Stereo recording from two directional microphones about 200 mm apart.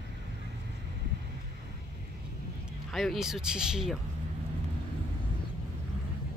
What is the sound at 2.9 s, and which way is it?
Speech, centre (ahead or behind).